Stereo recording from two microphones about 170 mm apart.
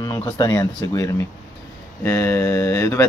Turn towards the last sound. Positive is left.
turn(degrees=15)  # may be behind; listen again after turning